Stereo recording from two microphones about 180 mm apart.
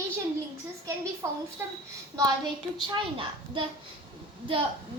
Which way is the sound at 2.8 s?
25° right (ahead or behind).